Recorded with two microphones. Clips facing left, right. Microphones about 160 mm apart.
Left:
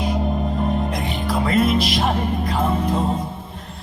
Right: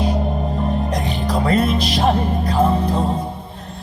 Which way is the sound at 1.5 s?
40° right (ahead or behind).